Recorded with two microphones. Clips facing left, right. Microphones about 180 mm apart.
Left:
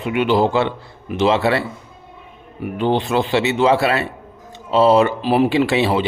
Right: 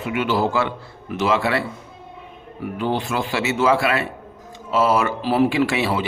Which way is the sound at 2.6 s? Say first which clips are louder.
Left 4 dB; 25° left (ahead or behind).